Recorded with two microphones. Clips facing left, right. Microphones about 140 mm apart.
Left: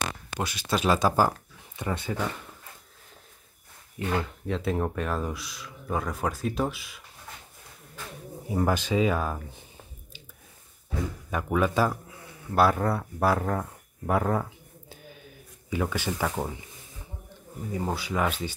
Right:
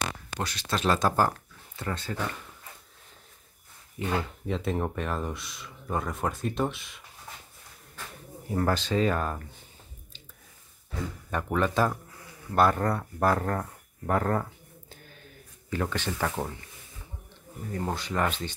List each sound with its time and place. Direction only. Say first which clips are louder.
0.4 s speech: left 3 dB; 10° left (ahead or behind)
4.0 s speech: left 1 dB; centre (ahead or behind)
8.5 s speech: left 1 dB; 10° left (ahead or behind)
11.2 s speech: left 1 dB; 5° left (ahead or behind)
17.6 s speech: left 1 dB; 5° left (ahead or behind)